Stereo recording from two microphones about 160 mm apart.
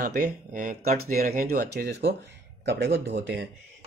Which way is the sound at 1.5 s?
85° right.